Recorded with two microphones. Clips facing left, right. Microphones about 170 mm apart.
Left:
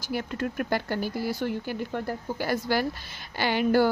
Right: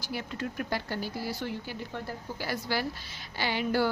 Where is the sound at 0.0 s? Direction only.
50° left (ahead or behind).